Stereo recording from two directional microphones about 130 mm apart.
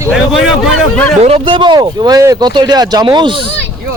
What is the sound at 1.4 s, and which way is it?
Speech, 40° right (ahead or behind).